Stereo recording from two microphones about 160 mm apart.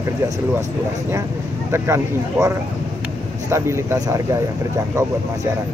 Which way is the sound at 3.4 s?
15° right (ahead or behind).